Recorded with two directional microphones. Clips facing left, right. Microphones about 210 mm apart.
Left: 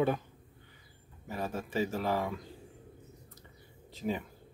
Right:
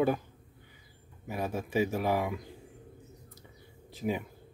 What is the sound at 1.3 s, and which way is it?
Speech, 10° right (ahead or behind).